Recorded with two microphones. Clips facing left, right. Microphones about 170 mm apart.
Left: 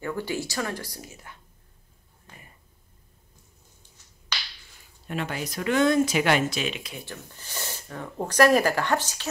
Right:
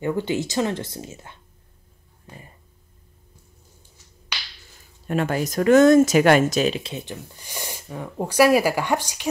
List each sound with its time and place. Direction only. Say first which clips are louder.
0.0 s speech: right 6 dB; 20° right (ahead or behind)
5.0 s speech: right 8 dB; 45° right (ahead or behind); by 9.3 s 15° right (ahead or behind)